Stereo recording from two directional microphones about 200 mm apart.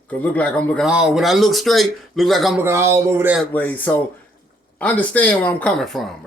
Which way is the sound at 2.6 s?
15° right (ahead or behind).